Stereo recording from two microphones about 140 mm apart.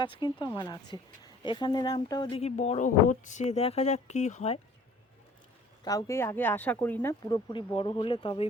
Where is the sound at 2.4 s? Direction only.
50° left (ahead or behind).